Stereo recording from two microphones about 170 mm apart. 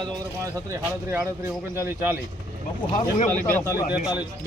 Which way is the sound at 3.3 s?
15° left (ahead or behind).